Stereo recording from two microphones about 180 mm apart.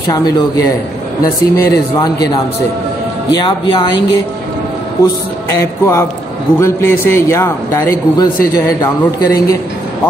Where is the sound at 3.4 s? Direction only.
25° left (ahead or behind).